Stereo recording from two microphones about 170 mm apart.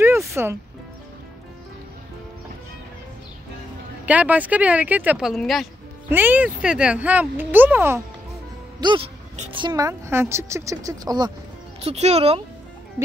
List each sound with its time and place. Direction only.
0.0 s music: 15° right (ahead or behind)
4.0 s speech: 10° right (ahead or behind)
6.0 s speech: 10° right (ahead or behind)
8.8 s a woman's voice: 30° right (ahead or behind)
11.8 s speech: 40° right (ahead or behind)